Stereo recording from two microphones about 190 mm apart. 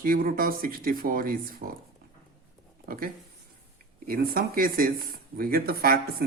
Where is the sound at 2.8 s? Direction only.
45° right (ahead or behind).